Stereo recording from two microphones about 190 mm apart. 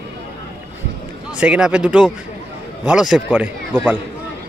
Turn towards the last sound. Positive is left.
turn(degrees=-10)  # may be behind; listen again after turning